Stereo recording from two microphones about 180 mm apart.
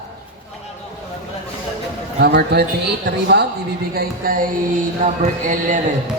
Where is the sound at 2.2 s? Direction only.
65° right (ahead or behind).